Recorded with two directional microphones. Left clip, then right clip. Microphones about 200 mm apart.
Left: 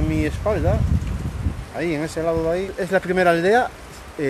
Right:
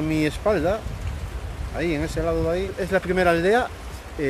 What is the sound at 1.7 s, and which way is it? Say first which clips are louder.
Speech: left 1 dB; 10° left (ahead or behind).